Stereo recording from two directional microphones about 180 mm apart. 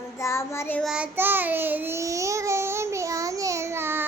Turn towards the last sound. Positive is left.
turn(degrees=-15)  # may be behind; listen again after turning